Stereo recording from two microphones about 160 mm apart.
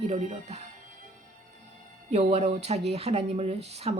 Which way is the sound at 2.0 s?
45° right (ahead or behind).